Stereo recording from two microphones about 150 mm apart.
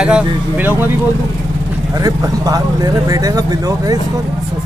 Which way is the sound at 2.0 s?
25° right (ahead or behind).